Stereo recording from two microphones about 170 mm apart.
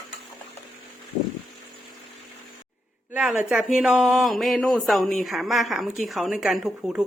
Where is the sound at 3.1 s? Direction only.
5° right (ahead or behind).